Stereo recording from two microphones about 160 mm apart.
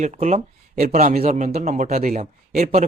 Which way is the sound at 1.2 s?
40° right (ahead or behind).